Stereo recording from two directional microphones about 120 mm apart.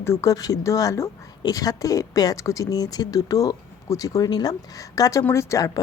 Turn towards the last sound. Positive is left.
turn(degrees=30)  # may be behind; listen again after turning